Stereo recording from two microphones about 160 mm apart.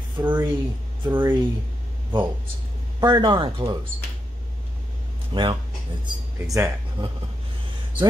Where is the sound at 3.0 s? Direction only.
30° right (ahead or behind).